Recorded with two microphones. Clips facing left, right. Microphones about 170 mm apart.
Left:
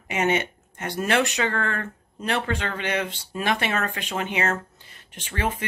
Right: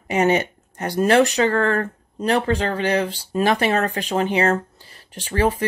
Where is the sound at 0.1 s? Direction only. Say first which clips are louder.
Right 5 dB; 35° right (ahead or behind).